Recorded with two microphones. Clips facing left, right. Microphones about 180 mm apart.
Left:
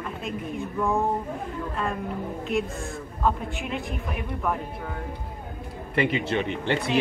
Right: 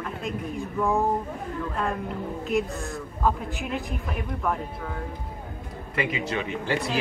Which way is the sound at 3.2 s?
Centre (ahead or behind).